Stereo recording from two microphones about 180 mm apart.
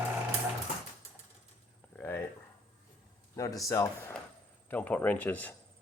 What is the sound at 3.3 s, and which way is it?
Speech, 20° left (ahead or behind).